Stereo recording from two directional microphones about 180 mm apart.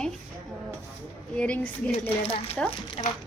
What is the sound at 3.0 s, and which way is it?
Speech, 40° left (ahead or behind).